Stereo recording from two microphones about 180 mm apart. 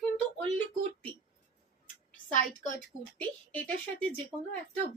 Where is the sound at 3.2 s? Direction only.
10° left (ahead or behind).